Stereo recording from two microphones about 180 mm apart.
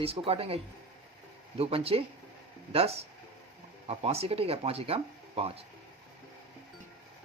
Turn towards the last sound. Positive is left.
turn(degrees=-35)  # may be behind; listen again after turning